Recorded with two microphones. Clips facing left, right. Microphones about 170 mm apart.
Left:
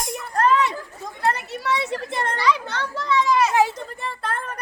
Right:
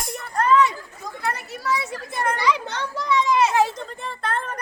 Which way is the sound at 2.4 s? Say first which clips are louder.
Left 1 dB; 20° right (ahead or behind).